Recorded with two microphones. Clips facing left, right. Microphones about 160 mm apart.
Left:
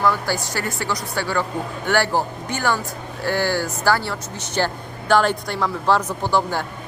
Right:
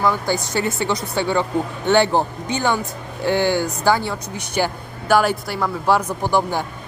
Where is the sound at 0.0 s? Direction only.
15° right (ahead or behind).